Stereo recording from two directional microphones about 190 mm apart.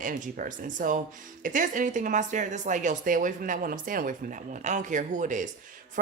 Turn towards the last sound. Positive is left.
turn(degrees=-40)  # may be behind; listen again after turning